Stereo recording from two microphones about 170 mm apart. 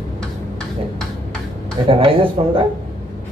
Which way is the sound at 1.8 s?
30° right (ahead or behind).